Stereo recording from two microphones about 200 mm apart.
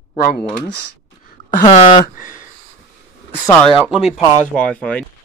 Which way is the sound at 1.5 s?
40° left (ahead or behind).